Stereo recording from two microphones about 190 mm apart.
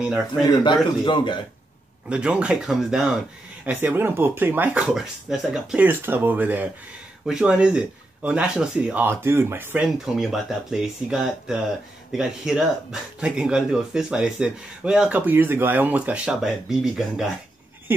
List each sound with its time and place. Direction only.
1.0 s speech: 25° left (ahead or behind)
2.0 s speech: 5° right (ahead or behind)